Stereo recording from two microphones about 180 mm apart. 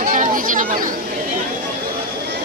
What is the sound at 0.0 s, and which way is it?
Chatter, 50° right (ahead or behind).